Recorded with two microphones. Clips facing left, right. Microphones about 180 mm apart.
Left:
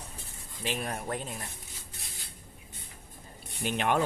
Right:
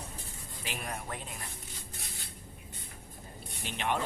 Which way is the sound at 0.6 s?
30° left (ahead or behind).